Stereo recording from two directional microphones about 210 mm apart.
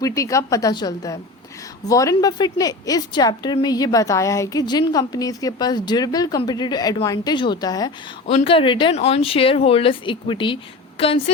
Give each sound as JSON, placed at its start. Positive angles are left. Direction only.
{"t": 0.0, "sound": "a woman's voice", "side_deg": 15}